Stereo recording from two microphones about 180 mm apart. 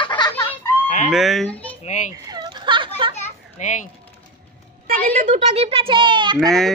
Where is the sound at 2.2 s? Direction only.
25° right (ahead or behind).